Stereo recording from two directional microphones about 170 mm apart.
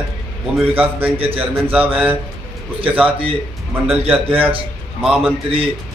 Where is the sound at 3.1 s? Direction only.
30° right (ahead or behind).